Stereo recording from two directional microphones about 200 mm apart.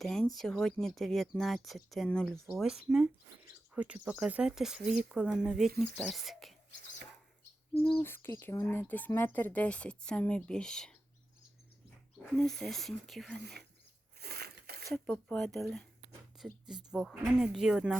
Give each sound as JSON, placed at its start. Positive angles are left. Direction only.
{"t": 0.0, "sound": "speech", "side_deg": 0}
{"t": 7.9, "sound": "a woman's voice", "side_deg": 10}
{"t": 12.3, "sound": "speech", "side_deg": 0}
{"t": 13.4, "sound": "speech", "side_deg": -55}
{"t": 14.2, "sound": "a sound", "side_deg": -55}
{"t": 14.9, "sound": "speech", "side_deg": 5}